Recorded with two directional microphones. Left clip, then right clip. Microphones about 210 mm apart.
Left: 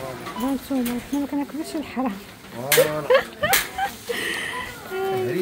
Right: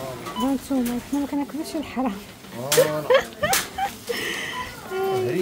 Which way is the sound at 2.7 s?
5° right (ahead or behind).